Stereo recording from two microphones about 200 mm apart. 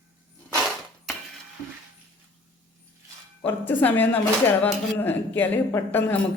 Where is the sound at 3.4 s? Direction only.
10° left (ahead or behind).